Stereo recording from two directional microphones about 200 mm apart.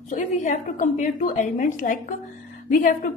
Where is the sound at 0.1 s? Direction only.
40° left (ahead or behind).